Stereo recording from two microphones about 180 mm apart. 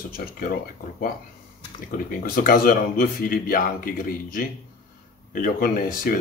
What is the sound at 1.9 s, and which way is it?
Speech, 50° left (ahead or behind).